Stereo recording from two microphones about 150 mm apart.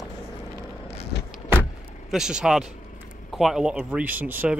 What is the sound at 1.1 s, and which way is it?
Vehicle, 90° left.